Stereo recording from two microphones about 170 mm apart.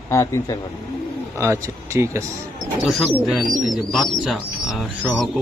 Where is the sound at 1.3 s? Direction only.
15° right (ahead or behind).